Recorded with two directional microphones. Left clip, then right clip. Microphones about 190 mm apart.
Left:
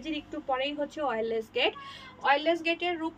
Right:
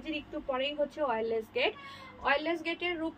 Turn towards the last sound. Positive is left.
turn(degrees=20)  # may be behind; listen again after turning